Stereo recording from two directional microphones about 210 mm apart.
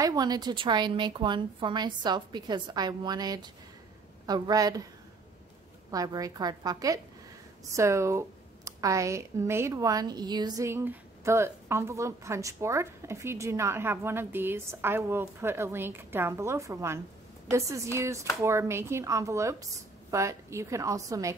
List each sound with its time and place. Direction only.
0.0 s a woman's voice: 20° right (ahead or behind)
5.9 s speech: 15° right (ahead or behind)